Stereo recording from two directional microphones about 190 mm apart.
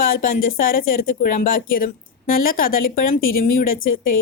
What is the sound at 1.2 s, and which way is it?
Speech, 45° left (ahead or behind).